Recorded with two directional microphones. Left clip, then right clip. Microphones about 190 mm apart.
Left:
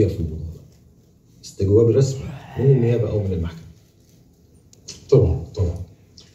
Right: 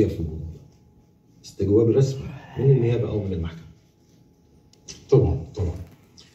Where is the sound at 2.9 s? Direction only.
5° left (ahead or behind).